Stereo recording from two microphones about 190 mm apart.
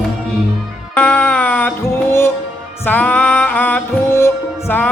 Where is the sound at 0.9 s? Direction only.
5° left (ahead or behind).